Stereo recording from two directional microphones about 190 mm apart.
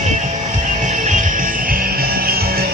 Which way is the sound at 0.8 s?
40° right (ahead or behind).